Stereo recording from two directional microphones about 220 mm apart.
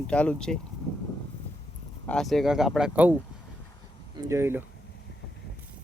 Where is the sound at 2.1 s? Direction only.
Centre (ahead or behind).